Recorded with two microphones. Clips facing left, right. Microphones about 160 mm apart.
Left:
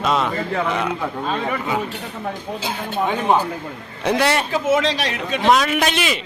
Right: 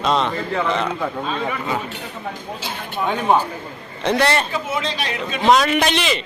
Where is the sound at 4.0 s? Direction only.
10° left (ahead or behind).